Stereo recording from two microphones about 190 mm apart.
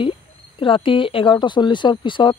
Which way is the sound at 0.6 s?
25° left (ahead or behind).